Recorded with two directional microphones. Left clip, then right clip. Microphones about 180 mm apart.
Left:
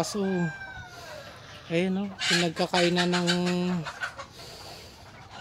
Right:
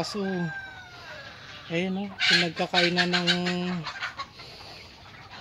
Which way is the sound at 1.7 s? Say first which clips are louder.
Left 2 dB; 5° left (ahead or behind).